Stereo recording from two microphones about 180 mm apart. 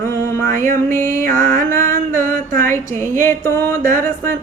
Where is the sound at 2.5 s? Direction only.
15° left (ahead or behind).